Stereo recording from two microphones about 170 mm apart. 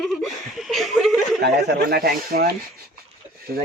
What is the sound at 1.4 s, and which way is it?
Speech, 75° right (ahead or behind).